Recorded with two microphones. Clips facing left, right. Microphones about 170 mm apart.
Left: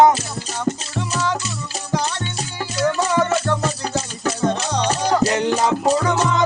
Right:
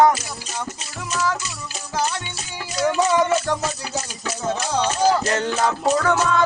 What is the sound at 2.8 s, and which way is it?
Music, 10° right (ahead or behind).